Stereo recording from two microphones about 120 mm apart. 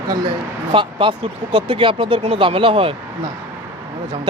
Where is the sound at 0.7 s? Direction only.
45° right (ahead or behind).